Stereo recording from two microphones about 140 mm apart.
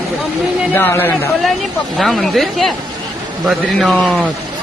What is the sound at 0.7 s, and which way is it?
Speech, 15° left (ahead or behind).